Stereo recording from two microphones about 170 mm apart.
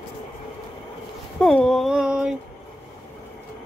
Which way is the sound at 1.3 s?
5° left (ahead or behind).